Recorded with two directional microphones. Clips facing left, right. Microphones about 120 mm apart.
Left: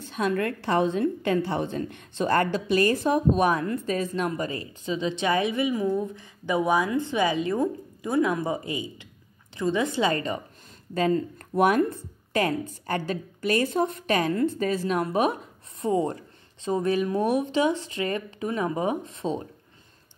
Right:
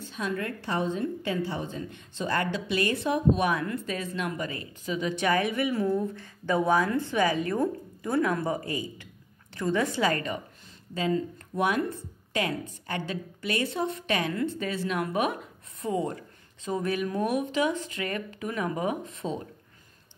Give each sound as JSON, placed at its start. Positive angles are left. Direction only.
{"t": 0.1, "sound": "a woman's voice", "side_deg": 65}
{"t": 11.0, "sound": "a woman's voice", "side_deg": 55}